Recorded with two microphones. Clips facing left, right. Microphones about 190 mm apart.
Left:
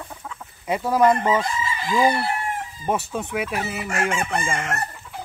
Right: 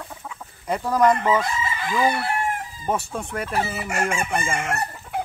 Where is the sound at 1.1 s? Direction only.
20° left (ahead or behind).